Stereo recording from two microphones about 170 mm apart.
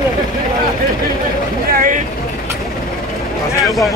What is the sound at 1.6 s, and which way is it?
Boat, 55° right (ahead or behind).